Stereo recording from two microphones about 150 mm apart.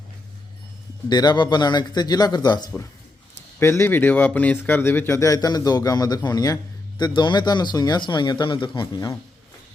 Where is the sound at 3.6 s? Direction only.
15° left (ahead or behind).